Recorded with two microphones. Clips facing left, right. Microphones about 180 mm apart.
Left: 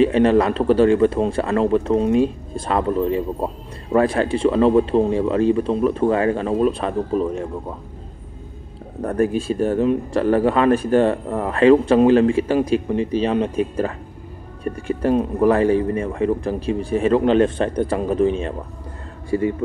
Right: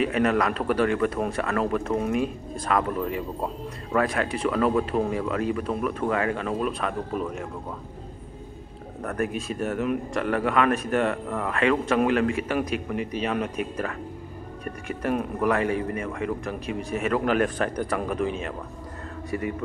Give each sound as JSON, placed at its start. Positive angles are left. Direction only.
{"t": 0.0, "sound": "a man's voice", "side_deg": 30}
{"t": 9.0, "sound": "a man's voice", "side_deg": 30}